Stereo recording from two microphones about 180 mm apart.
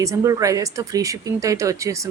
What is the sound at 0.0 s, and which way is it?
A woman's voice, 15° right (ahead or behind).